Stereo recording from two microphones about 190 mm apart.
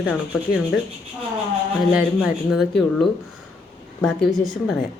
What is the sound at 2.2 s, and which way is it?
Speech, centre (ahead or behind).